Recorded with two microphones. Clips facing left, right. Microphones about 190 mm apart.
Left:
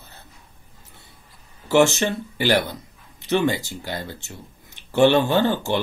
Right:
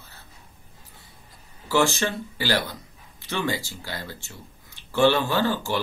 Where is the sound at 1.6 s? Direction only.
20° left (ahead or behind).